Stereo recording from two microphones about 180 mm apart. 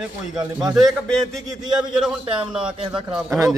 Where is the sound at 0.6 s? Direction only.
Centre (ahead or behind).